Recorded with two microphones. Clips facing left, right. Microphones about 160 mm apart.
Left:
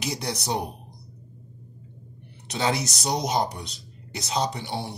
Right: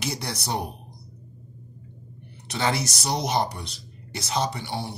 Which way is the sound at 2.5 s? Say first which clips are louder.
Even; 20° left (ahead or behind).